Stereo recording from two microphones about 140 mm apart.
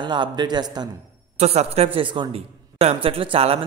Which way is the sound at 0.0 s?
35° right (ahead or behind).